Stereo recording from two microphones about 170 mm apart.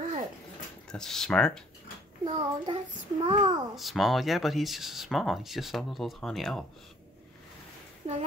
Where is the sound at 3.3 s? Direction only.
25° right (ahead or behind).